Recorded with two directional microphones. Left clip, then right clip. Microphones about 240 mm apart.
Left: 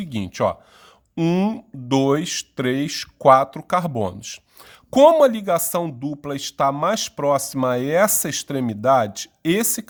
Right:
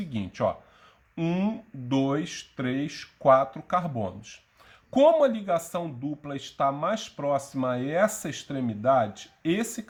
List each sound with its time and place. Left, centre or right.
0.0 s speech: left